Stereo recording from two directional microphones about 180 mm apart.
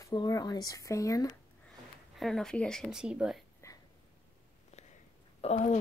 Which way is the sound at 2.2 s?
Centre (ahead or behind).